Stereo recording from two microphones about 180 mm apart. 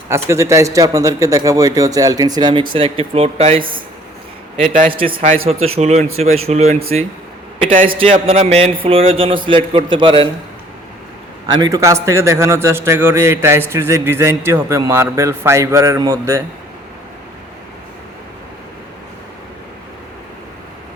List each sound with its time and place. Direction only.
0.1 s a man's voice: 15° right (ahead or behind); by 4.9 s 40° right (ahead or behind)
4.9 s a man's voice: 30° right (ahead or behind)
5.2 s speech: 45° right (ahead or behind)
7.9 s a man's voice: 35° right (ahead or behind)
11.4 s a man's voice: 20° right (ahead or behind)